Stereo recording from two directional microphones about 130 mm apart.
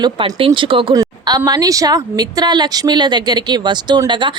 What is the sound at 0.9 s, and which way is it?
Speech, 30° right (ahead or behind).